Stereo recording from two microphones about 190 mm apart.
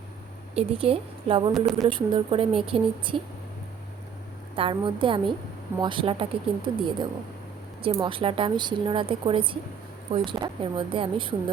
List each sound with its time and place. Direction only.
0.5 s a woman's voice: 30° right (ahead or behind)
1.5 s speech: centre (ahead or behind)
1.9 s a woman's voice: 25° right (ahead or behind)
4.5 s a woman's voice: 25° right (ahead or behind)